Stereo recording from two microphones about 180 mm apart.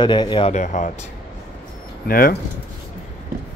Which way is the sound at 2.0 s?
55° left (ahead or behind).